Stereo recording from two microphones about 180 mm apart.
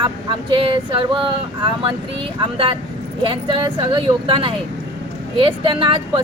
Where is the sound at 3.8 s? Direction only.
25° right (ahead or behind).